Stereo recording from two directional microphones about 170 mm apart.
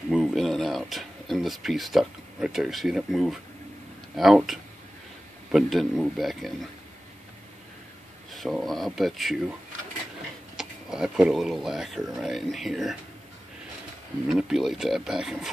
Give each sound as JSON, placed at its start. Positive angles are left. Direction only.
{"t": 0.1, "sound": "a sound", "side_deg": 0}
{"t": 4.2, "sound": "speech", "side_deg": 0}
{"t": 8.3, "sound": "speech", "side_deg": 0}
{"t": 10.5, "sound": "speech", "side_deg": -5}
{"t": 14.2, "sound": "speech", "side_deg": 0}